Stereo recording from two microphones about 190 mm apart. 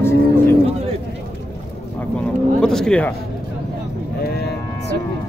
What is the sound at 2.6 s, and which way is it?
Speech, 5° left (ahead or behind).